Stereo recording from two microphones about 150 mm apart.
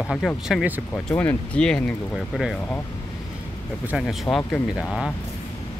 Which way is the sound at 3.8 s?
5° right (ahead or behind).